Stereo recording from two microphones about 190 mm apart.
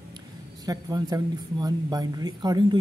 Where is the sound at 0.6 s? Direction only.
20° right (ahead or behind).